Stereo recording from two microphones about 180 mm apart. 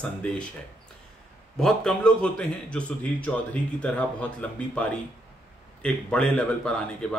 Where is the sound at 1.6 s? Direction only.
5° left (ahead or behind).